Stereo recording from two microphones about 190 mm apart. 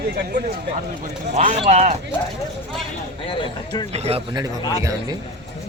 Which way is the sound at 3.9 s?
35° right (ahead or behind).